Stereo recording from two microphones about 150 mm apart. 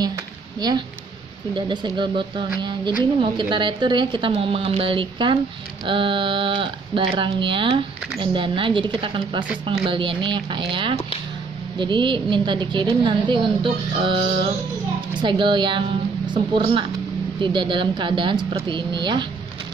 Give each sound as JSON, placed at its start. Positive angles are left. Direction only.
{"t": 0.6, "sound": "speech", "side_deg": -25}